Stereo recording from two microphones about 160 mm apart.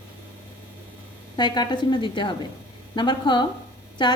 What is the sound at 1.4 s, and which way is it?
A woman's voice, 25° left (ahead or behind).